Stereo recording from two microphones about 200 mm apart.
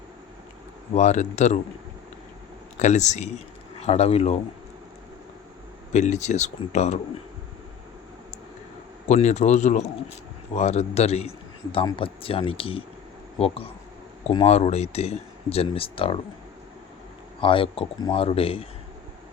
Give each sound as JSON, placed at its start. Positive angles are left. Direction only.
{"t": 0.9, "sound": "speech", "side_deg": 35}
{"t": 2.7, "sound": "speech", "side_deg": 35}
{"t": 5.9, "sound": "speech", "side_deg": 35}
{"t": 9.0, "sound": "speech", "side_deg": 35}
{"t": 17.4, "sound": "speech", "side_deg": 25}